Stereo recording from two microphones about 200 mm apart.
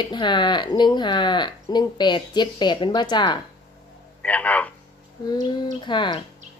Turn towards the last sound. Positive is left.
turn(degrees=25)  # may be behind; listen again after turning